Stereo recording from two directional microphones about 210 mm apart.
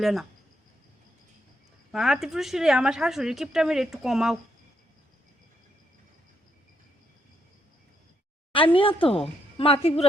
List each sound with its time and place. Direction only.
0.0 s a woman's voice: centre (ahead or behind)
1.9 s a woman's voice: centre (ahead or behind)
8.5 s a woman's voice: 25° left (ahead or behind)